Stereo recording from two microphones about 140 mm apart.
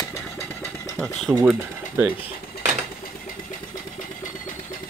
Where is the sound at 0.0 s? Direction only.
20° left (ahead or behind).